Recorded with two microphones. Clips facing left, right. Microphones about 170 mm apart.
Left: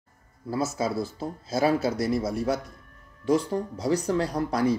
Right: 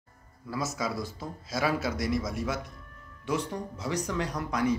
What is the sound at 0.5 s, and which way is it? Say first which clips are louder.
Speech: left 5 dB; 30° left (ahead or behind).